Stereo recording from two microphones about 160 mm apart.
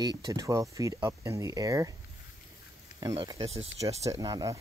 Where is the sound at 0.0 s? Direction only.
25° right (ahead or behind).